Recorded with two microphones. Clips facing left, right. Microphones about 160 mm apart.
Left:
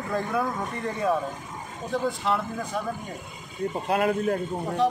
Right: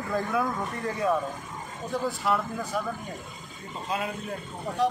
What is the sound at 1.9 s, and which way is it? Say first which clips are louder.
Speech: left 1 dB; centre (ahead or behind).